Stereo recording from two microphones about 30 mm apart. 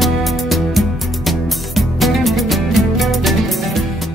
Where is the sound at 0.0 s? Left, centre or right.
Centre.